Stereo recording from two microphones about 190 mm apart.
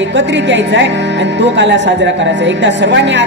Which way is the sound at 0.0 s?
70° right (ahead or behind).